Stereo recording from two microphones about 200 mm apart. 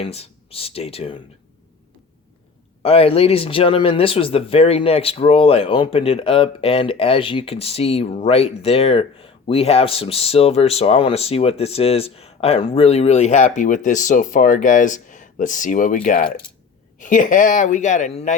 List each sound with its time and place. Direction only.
0.0 s speech: 30° left (ahead or behind)
2.8 s speech: 30° left (ahead or behind)